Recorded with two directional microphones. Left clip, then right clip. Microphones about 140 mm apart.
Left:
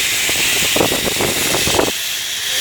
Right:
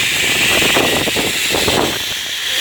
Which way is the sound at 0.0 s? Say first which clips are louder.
Right 2 dB; 60° left (ahead or behind).